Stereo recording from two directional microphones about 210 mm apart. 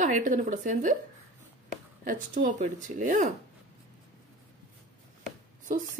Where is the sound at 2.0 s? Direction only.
35° right (ahead or behind).